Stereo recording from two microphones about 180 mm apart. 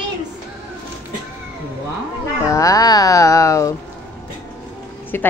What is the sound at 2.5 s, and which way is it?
Speech, 20° left (ahead or behind).